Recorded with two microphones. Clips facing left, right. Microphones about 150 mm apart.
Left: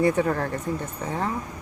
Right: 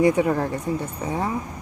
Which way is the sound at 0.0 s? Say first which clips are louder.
Right 3 dB; 15° right (ahead or behind).